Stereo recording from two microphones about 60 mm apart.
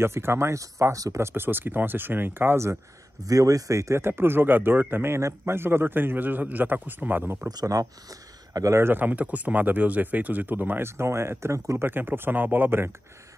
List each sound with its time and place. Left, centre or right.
0.0 s speech: right
1.2 s a man's voice: right
3.3 s a man's voice: right
5.0 s a man's voice: right
7.4 s speech: right
8.1 s a sound: right
8.7 s speech: right
9.0 s speech: right
10.9 s speech: right
11.8 s a man's voice: right